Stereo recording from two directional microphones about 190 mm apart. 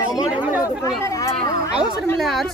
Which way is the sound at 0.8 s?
15° left (ahead or behind).